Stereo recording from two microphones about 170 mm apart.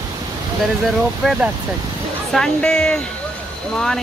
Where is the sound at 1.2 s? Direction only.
Centre (ahead or behind).